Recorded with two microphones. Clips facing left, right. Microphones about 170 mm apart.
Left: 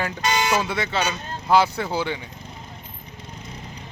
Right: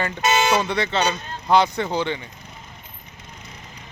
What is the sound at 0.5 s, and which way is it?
Speech, 5° left (ahead or behind).